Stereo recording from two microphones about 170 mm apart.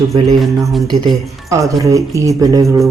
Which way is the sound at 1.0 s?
20° right (ahead or behind).